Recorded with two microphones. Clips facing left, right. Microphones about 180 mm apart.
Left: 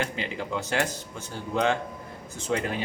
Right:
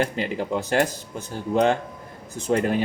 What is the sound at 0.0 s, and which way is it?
A man's voice, 45° right (ahead or behind).